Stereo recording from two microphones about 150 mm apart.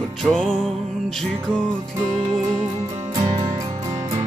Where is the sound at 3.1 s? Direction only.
25° right (ahead or behind).